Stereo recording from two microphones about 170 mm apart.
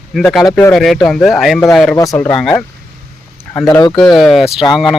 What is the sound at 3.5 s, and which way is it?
Speech, 20° left (ahead or behind).